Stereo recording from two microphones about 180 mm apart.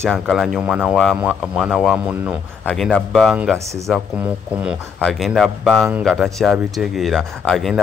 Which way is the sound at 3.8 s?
5° right (ahead or behind).